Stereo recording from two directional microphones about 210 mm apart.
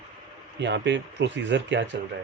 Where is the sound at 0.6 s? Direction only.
55° right (ahead or behind).